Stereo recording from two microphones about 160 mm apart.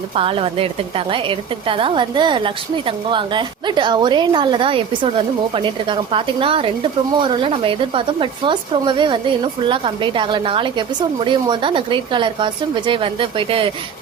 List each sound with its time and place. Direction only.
0.2 s a woman's voice: 35° right (ahead or behind)